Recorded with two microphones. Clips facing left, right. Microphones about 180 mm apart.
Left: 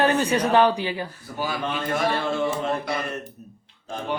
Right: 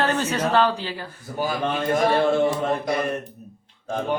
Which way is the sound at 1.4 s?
40° right (ahead or behind).